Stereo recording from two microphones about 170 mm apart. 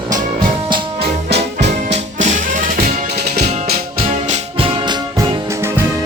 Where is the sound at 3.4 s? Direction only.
40° right (ahead or behind); by 5.8 s 15° right (ahead or behind).